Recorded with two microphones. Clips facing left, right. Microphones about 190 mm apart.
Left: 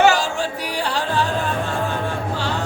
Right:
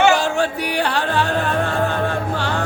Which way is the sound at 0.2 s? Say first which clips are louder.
Right 4 dB; 60° right (ahead or behind).